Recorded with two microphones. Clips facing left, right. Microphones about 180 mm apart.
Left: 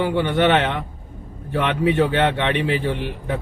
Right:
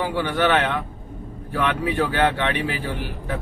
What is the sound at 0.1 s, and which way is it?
Speech, 20° left (ahead or behind).